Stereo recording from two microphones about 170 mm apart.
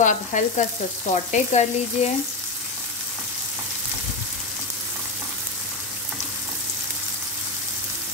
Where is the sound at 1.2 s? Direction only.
40° left (ahead or behind).